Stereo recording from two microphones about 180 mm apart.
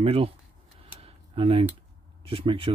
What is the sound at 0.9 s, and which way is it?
Camera, 30° right (ahead or behind).